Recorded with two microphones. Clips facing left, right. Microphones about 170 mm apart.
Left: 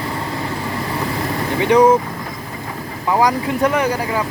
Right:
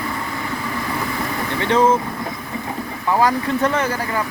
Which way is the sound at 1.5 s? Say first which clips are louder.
Left 4 dB; 15° left (ahead or behind).